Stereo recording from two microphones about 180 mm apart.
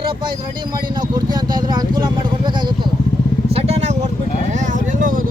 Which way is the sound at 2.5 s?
25° right (ahead or behind).